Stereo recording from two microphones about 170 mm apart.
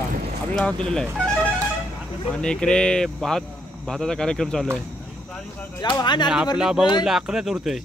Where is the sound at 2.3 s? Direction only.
5° left (ahead or behind).